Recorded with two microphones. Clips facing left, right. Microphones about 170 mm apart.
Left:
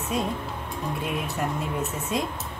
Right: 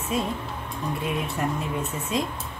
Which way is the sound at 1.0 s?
Centre (ahead or behind).